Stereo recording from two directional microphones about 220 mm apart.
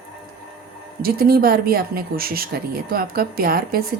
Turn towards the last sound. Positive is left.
turn(degrees=-45)  # may be behind; listen again after turning